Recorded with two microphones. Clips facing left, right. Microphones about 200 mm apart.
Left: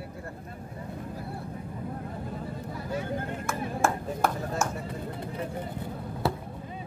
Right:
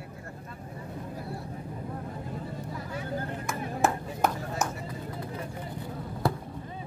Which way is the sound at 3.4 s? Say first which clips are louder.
Even; 20° right (ahead or behind).